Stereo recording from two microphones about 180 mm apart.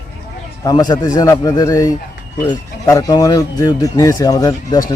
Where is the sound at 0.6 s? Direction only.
20° left (ahead or behind).